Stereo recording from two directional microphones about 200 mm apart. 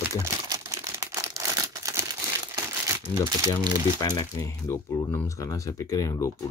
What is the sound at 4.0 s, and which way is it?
Speech, 20° left (ahead or behind).